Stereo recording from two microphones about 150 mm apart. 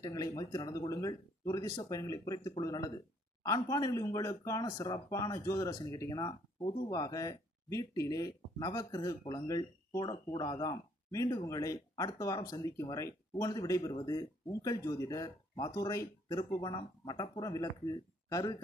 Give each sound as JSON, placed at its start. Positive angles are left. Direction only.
{"t": 0.0, "sound": "speech", "side_deg": 25}